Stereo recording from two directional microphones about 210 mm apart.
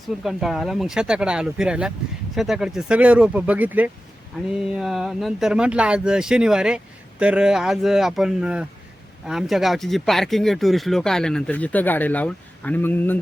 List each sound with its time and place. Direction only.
0.2 s speech: centre (ahead or behind)